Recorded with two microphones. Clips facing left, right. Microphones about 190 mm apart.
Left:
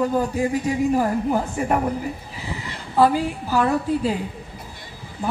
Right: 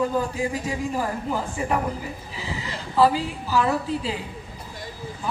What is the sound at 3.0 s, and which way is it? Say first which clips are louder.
A woman's voice: left 2 dB; 50° left (ahead or behind).